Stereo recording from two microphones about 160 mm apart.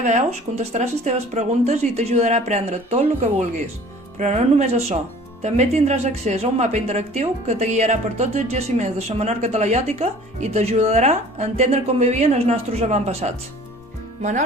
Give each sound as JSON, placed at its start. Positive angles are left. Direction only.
{"t": 0.0, "sound": "speech", "side_deg": -45}